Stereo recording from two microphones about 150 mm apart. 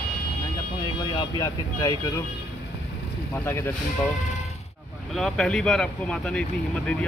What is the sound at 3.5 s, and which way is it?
Speech, 15° left (ahead or behind).